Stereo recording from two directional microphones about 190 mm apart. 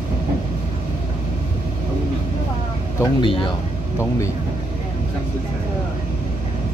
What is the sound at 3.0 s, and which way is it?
Speech, 25° left (ahead or behind).